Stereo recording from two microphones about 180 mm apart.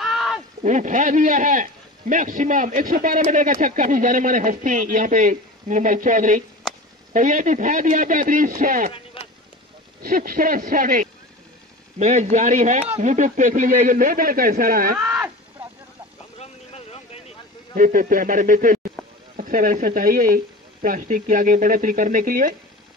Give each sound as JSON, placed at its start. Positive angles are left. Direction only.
{"t": 0.0, "sound": "a sound", "side_deg": 0}
{"t": 0.6, "sound": "a man's voice", "side_deg": -45}
{"t": 9.2, "sound": "vehicle", "side_deg": 30}
{"t": 10.0, "sound": "a man's voice", "side_deg": -50}
{"t": 15.0, "sound": "a sound", "side_deg": -5}
{"t": 16.3, "sound": "vehicle", "side_deg": 35}
{"t": 17.7, "sound": "a man's voice", "side_deg": -50}